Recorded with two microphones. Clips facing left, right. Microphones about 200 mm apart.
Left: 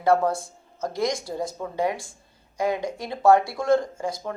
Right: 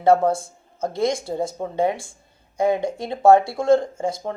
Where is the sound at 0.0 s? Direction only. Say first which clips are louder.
Right 4 dB; 25° right (ahead or behind).